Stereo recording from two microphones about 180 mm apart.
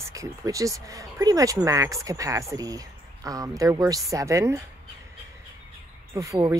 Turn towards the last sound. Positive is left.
turn(degrees=-20)  # may be behind; listen again after turning